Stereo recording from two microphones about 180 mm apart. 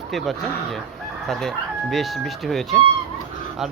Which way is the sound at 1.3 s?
Centre (ahead or behind).